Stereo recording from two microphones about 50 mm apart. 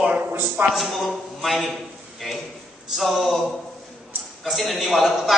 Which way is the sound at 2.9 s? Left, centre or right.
Centre.